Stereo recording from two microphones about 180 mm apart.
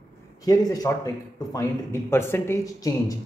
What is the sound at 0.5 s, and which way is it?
Speech, 20° left (ahead or behind).